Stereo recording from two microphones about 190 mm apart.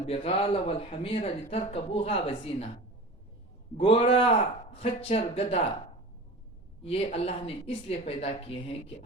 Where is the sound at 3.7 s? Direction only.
30° left (ahead or behind).